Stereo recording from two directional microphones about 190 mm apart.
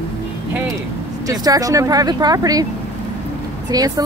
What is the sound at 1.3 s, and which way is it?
Speech, 20° right (ahead or behind).